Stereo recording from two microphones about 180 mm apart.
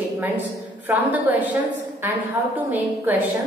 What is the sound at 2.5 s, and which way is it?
Speech, 10° right (ahead or behind).